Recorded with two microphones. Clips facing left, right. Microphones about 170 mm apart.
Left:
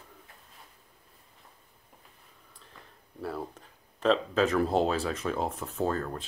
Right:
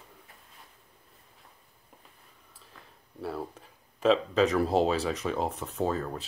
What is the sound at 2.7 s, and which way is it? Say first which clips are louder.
Speech: even; centre (ahead or behind).